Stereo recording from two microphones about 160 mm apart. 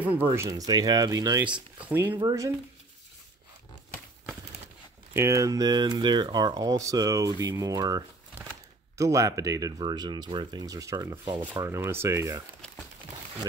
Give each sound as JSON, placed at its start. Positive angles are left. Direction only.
{"t": 0.0, "sound": "speech", "side_deg": -10}
{"t": 1.4, "sound": "speech", "side_deg": -10}
{"t": 5.1, "sound": "speech", "side_deg": -20}
{"t": 11.6, "sound": "speech", "side_deg": -15}